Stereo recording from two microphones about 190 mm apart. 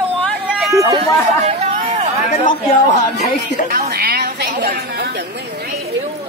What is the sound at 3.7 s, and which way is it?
A woman's voice, 55° right (ahead or behind).